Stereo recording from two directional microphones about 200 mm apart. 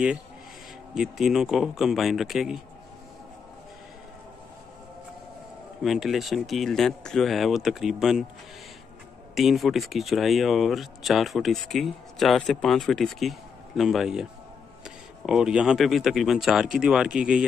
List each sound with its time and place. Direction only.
0.9 s speech: centre (ahead or behind)
5.8 s speech: centre (ahead or behind)
9.3 s speech: centre (ahead or behind)
15.2 s speech: 5° right (ahead or behind)